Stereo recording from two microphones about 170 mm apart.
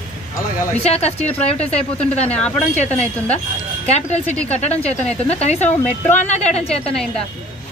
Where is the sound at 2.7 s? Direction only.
40° left (ahead or behind).